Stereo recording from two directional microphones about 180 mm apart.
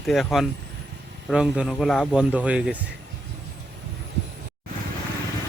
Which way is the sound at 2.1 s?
5° right (ahead or behind).